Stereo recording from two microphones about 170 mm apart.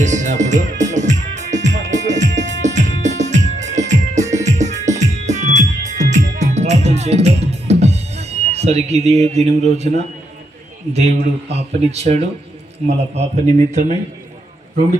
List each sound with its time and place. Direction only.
0.0 s music: 45° right (ahead or behind)
10.9 s speech: 40° right (ahead or behind)